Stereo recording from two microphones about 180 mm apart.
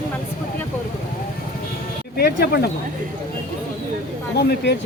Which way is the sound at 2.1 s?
60° left (ahead or behind).